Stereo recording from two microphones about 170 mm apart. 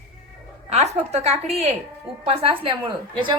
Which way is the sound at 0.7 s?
40° right (ahead or behind).